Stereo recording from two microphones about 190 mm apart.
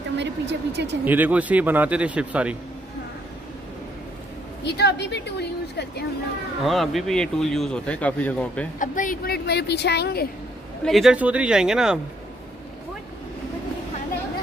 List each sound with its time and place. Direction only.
0.2 s speech: 65° right (ahead or behind)
1.0 s speech: 10° right (ahead or behind)
4.6 s a woman's voice: 60° left (ahead or behind)
6.6 s speech: centre (ahead or behind)
8.7 s a woman's voice: 45° left (ahead or behind); by 10.2 s 60° left (ahead or behind)
10.8 s speech: centre (ahead or behind)